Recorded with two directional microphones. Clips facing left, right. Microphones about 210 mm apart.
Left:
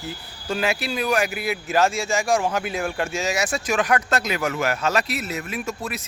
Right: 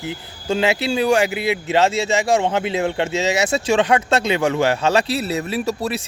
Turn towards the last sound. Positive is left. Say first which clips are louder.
# right 7 dB
turn(degrees=-35)  # may be behind; listen again after turning